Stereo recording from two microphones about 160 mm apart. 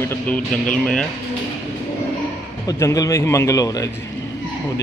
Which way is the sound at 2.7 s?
20° left (ahead or behind).